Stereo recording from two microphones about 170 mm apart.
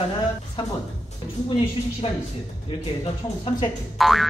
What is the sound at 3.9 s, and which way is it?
Speech, centre (ahead or behind).